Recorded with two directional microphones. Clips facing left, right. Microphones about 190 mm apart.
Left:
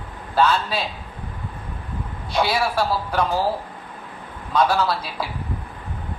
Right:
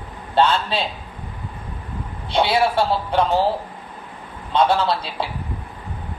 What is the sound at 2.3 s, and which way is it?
A man's voice, 25° right (ahead or behind).